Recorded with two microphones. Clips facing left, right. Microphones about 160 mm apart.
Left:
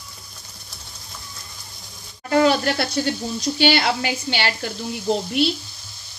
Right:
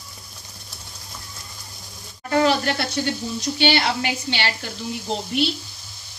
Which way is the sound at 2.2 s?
35° left (ahead or behind).